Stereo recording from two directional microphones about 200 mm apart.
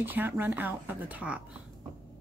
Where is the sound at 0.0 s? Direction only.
10° right (ahead or behind).